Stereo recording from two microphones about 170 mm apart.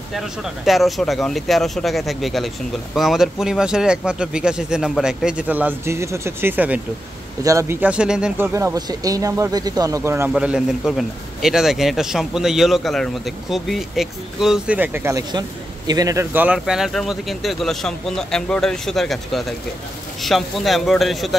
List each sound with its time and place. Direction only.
0.1 s speech: centre (ahead or behind)
8.5 s speech: 20° right (ahead or behind)
10.3 s speech: 5° right (ahead or behind)